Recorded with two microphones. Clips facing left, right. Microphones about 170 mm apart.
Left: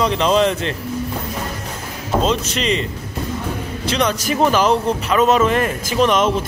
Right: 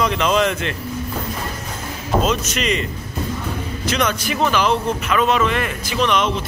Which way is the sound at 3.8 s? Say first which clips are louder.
Left 2 dB; 30° left (ahead or behind).